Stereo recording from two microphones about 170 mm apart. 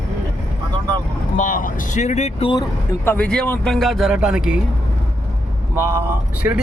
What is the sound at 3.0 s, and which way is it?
Speech, 10° left (ahead or behind).